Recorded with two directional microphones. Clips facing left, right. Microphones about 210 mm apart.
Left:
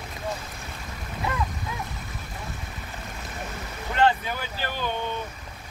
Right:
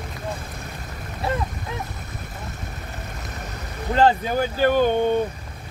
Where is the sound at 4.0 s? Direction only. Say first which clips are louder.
Right 5 dB; 40° right (ahead or behind).